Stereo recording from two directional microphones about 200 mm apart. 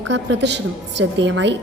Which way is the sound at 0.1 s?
60° right (ahead or behind).